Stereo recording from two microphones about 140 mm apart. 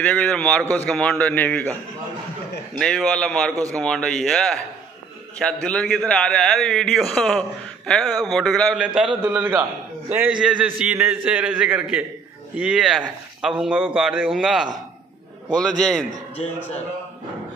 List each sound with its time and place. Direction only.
0.0 s a man's voice: 10° left (ahead or behind)
2.8 s a man's voice: 5° left (ahead or behind)
9.2 s a man's voice: 15° right (ahead or behind); by 16.1 s centre (ahead or behind)